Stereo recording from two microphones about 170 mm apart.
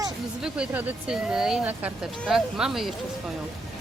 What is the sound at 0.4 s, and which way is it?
Speech, 5° right (ahead or behind).